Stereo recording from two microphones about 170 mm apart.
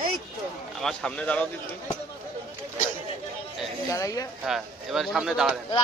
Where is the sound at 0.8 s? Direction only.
5° left (ahead or behind).